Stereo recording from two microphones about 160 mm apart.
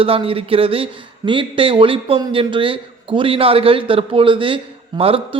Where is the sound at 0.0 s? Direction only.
35° right (ahead or behind).